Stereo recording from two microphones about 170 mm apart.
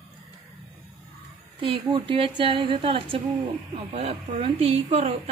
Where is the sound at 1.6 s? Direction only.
30° right (ahead or behind).